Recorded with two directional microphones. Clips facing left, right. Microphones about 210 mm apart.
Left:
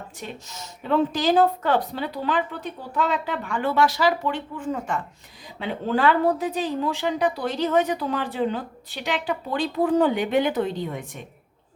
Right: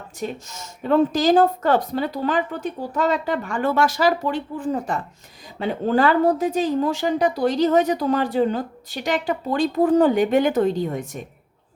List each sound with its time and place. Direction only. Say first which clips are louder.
0.2 s a woman's voice: right 9 dB; 45° right (ahead or behind)